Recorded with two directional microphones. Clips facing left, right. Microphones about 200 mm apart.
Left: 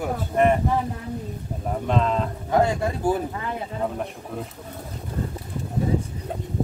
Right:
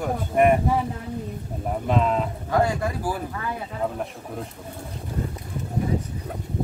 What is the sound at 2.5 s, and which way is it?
Speech, 25° left (ahead or behind).